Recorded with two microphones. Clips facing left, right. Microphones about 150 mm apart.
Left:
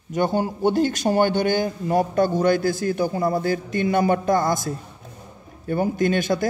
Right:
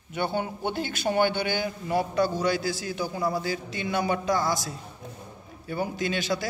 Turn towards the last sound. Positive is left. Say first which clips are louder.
# left 7 dB
turn(degrees=50)  # may be behind; listen again after turning